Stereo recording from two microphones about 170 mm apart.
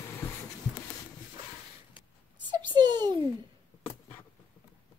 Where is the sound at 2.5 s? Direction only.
25° right (ahead or behind).